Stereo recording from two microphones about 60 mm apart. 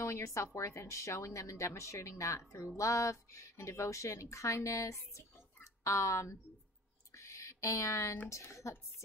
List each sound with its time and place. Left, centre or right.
0.0 s speech: left
7.1 s a sound: left
8.3 s speech: left